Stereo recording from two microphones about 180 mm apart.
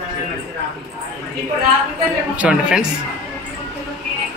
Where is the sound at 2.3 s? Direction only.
5° right (ahead or behind).